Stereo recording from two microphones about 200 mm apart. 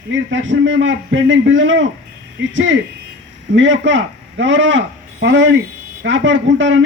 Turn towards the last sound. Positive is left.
turn(degrees=-70)  # may be behind; listen again after turning